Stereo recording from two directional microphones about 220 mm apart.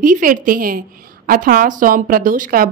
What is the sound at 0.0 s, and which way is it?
A woman's voice, 40° right (ahead or behind).